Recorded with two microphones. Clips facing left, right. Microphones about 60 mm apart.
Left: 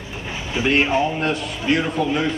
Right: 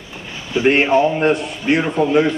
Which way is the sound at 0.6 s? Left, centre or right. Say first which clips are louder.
Right 5 dB; right.